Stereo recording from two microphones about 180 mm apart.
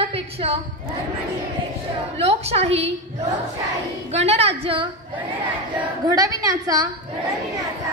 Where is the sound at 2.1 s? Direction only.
35° right (ahead or behind).